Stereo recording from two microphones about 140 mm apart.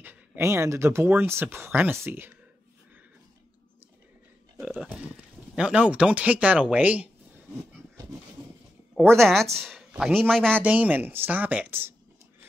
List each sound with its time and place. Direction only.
0.0 s speech: 10° right (ahead or behind)
4.6 s a sound: 5° right (ahead or behind)
5.6 s speech: 10° right (ahead or behind)
9.2 s speech: centre (ahead or behind)
10.6 s speech: 10° right (ahead or behind)